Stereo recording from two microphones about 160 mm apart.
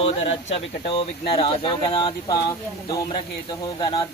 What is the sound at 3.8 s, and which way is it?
Speech, 30° left (ahead or behind).